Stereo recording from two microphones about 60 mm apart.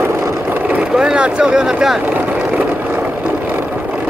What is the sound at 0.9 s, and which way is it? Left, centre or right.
Speech, centre.